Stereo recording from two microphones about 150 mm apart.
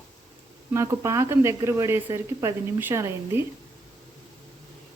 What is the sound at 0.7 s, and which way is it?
Speech, 20° right (ahead or behind).